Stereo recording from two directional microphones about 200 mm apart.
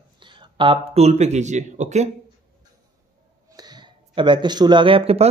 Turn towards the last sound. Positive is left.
turn(degrees=-30)  # may be behind; listen again after turning